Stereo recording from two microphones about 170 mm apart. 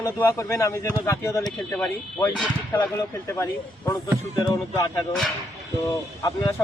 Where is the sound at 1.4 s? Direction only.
5° left (ahead or behind).